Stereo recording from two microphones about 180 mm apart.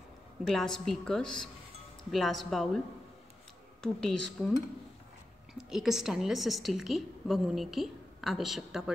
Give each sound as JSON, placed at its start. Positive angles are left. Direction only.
{"t": 0.5, "sound": "a woman's voice", "side_deg": 0}
{"t": 3.8, "sound": "a woman's voice", "side_deg": 5}